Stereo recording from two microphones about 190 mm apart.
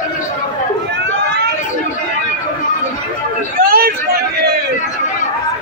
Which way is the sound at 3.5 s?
50° right (ahead or behind).